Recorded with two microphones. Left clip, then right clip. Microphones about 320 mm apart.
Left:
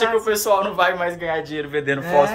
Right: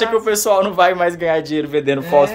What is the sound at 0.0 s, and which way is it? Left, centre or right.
Speech, right.